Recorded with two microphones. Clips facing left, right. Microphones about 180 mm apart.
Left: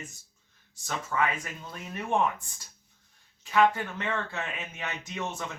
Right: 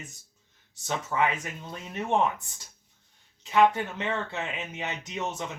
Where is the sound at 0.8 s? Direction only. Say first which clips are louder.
Right 2 dB; 25° right (ahead or behind).